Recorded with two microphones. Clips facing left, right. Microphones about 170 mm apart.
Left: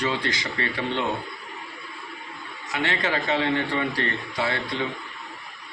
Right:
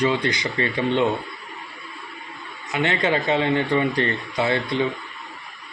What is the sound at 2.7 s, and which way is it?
A man's voice, 20° right (ahead or behind).